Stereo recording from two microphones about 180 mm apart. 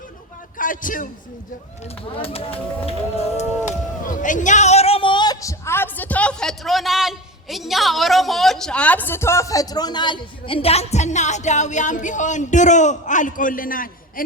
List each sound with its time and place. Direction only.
0.5 s a sound: 50° left (ahead or behind)
2.1 s speech: 30° left (ahead or behind)
3.7 s a man's voice: 45° left (ahead or behind)